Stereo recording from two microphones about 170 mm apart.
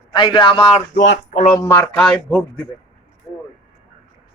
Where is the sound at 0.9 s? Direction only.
80° left.